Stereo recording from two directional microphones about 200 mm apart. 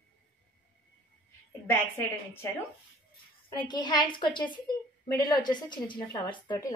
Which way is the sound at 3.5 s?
20° left (ahead or behind).